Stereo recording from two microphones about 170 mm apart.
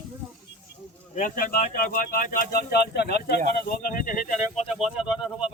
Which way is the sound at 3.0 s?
75° left (ahead or behind).